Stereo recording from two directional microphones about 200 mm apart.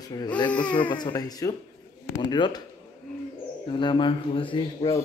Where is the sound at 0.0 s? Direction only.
20° left (ahead or behind).